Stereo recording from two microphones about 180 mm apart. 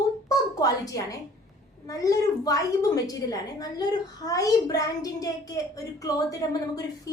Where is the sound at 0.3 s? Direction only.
20° left (ahead or behind).